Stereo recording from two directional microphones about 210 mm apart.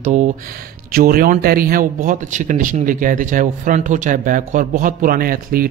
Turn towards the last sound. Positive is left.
turn(degrees=-45)  # may be behind; listen again after turning